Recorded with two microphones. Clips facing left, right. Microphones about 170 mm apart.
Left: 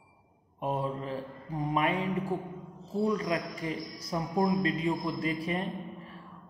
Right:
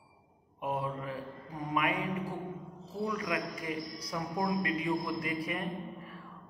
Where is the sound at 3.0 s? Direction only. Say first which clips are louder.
Left 3 dB; 30° left (ahead or behind).